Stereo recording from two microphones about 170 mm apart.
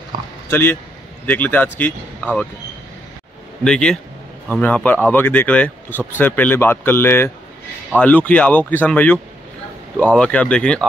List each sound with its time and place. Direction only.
0.1 s a sound: 25° right (ahead or behind)
0.5 s a man's voice: 15° left (ahead or behind)
3.6 s a man's voice: 5° left (ahead or behind)